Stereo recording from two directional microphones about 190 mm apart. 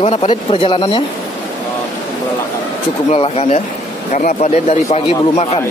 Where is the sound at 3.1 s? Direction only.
35° left (ahead or behind).